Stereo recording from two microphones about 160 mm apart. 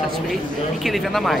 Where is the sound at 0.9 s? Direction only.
Centre (ahead or behind).